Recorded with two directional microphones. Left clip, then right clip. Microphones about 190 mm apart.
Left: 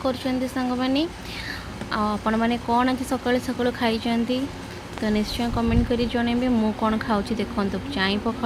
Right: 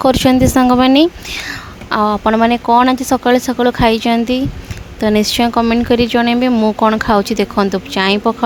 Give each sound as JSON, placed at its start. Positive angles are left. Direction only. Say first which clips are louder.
{"t": 0.0, "sound": "speech", "louder": "right 14 dB", "side_deg": -65}